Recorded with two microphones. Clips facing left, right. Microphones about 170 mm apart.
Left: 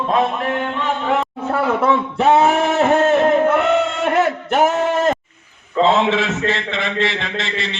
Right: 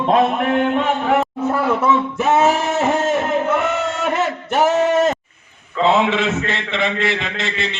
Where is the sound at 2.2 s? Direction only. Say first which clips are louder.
Left 3 dB; 60° left (ahead or behind).